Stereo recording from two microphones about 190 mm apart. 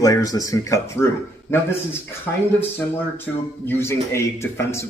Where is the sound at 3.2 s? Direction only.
10° left (ahead or behind).